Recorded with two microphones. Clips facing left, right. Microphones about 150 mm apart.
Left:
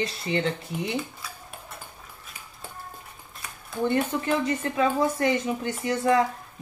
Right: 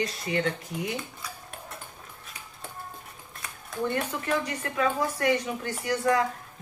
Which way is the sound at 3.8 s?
25° left (ahead or behind).